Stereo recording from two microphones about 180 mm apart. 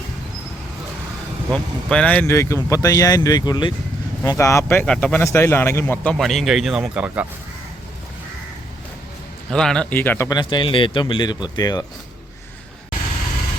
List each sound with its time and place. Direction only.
1.5 s speech: 5° left (ahead or behind)
9.5 s speech: 5° left (ahead or behind); by 11.9 s 20° left (ahead or behind)